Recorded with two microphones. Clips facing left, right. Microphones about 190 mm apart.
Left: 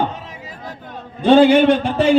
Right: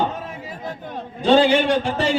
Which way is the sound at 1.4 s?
55° left (ahead or behind).